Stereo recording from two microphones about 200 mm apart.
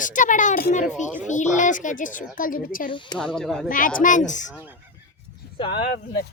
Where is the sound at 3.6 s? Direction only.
45° left (ahead or behind).